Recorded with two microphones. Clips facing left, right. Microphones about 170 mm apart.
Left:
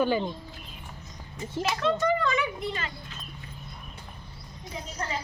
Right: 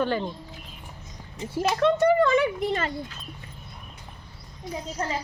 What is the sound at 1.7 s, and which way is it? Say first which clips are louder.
Speech: right 6 dB; 60° right (ahead or behind).